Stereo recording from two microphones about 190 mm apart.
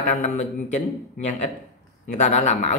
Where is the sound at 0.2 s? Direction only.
40° left (ahead or behind).